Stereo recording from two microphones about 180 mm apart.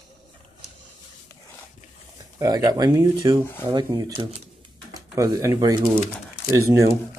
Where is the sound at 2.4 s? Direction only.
20° right (ahead or behind).